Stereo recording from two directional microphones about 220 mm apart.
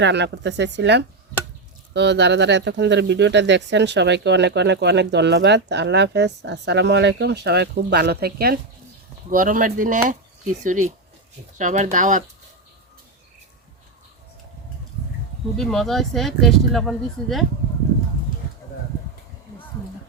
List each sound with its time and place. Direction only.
0.0 s speech: 50° right (ahead or behind); by 12.2 s 35° right (ahead or behind)
15.5 s speech: centre (ahead or behind)